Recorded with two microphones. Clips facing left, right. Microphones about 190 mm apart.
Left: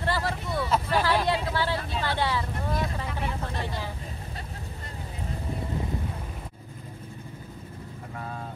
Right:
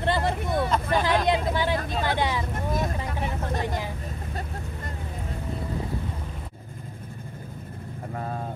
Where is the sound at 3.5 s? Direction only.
45° right (ahead or behind).